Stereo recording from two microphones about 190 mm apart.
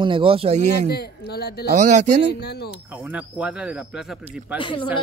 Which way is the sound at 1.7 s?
35° right (ahead or behind).